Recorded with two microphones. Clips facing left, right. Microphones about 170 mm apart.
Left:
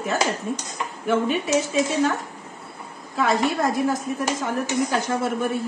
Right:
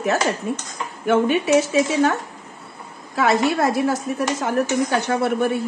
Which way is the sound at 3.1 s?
75° right (ahead or behind).